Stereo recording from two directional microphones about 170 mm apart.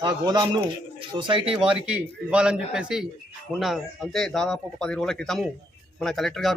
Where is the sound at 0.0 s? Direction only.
25° right (ahead or behind).